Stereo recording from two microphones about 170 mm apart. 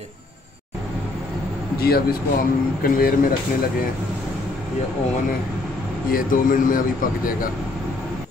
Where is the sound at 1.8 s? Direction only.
65° left (ahead or behind).